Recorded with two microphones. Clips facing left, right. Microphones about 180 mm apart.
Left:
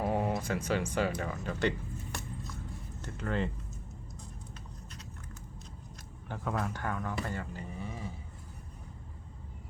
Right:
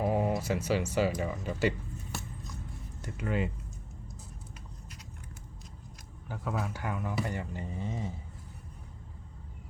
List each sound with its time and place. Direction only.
0.0 s a sound: centre (ahead or behind)
0.6 s speech: 10° right (ahead or behind)
3.0 s speech: 10° right (ahead or behind)
6.2 s speech: 5° right (ahead or behind); by 8.1 s 25° right (ahead or behind)